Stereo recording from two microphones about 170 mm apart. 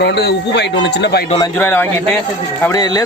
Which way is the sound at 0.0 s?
80° left.